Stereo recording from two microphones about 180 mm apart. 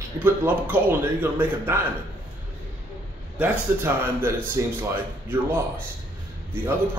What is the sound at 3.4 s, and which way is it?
Speech, 10° right (ahead or behind).